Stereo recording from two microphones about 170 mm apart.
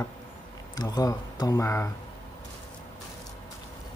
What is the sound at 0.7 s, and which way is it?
Speech, 20° left (ahead or behind).